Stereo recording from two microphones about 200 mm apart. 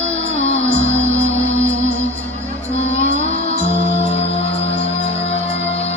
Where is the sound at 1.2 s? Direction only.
35° right (ahead or behind).